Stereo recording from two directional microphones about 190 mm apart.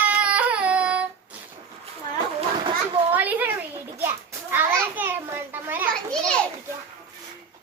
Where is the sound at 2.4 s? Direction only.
25° right (ahead or behind).